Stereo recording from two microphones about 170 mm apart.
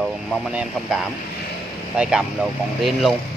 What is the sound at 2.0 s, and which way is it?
Speech, 5° right (ahead or behind).